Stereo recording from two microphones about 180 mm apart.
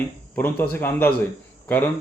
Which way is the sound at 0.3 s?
10° left (ahead or behind).